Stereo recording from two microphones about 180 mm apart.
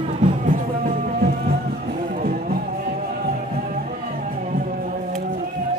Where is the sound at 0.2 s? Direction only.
50° right (ahead or behind).